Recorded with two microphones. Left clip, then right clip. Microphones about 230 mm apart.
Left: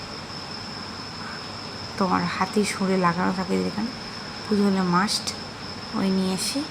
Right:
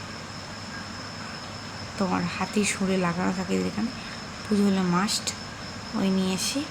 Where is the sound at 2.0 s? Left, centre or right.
Centre.